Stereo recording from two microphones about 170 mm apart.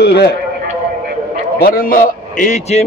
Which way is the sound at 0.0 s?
70° left (ahead or behind).